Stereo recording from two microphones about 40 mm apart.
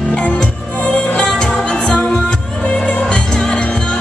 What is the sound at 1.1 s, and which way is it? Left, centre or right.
Music, left.